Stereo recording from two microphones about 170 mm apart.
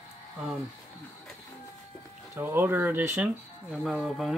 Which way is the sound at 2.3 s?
10° right (ahead or behind).